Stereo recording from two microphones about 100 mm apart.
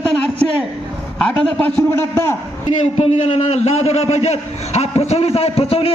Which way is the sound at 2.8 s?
90° left.